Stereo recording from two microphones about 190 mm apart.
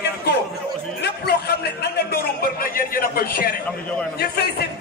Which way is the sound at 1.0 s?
60° left (ahead or behind).